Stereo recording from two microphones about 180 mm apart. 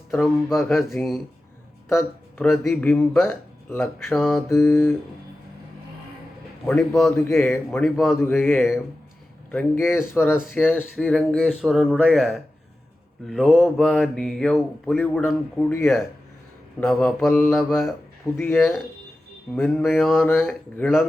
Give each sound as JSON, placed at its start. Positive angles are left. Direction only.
{"t": 0.1, "sound": "mantra", "side_deg": 0}
{"t": 0.9, "sound": "speech", "side_deg": 10}
{"t": 6.7, "sound": "mantra", "side_deg": 5}
{"t": 7.1, "sound": "speech", "side_deg": 15}
{"t": 7.8, "sound": "mantra", "side_deg": 0}
{"t": 8.1, "sound": "speech", "side_deg": 15}
{"t": 10.5, "sound": "mantra", "side_deg": 10}
{"t": 17.2, "sound": "speech", "side_deg": 10}
{"t": 17.5, "sound": "mantra", "side_deg": 0}
{"t": 18.3, "sound": "speech", "side_deg": 15}
{"t": 19.5, "sound": "speech", "side_deg": 10}
{"t": 19.8, "sound": "mantra", "side_deg": 0}
{"t": 20.2, "sound": "speech", "side_deg": 10}